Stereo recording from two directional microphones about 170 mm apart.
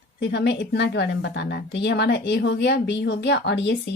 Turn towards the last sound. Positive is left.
turn(degrees=90)